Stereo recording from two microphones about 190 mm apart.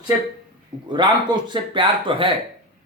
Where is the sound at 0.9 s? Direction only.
25° right (ahead or behind).